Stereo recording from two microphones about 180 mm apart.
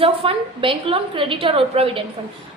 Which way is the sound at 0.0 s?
30° right (ahead or behind).